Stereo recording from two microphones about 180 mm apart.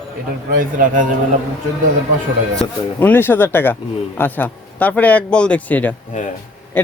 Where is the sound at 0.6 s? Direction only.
50° right (ahead or behind).